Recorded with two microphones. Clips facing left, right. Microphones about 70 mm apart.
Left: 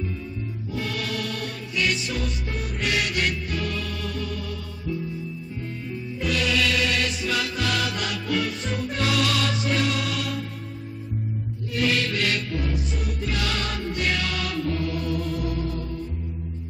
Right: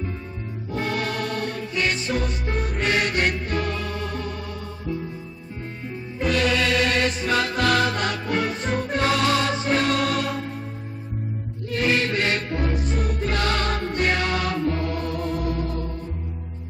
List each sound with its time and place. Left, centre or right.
0.7 s music: right
6.1 s music: right
11.7 s music: right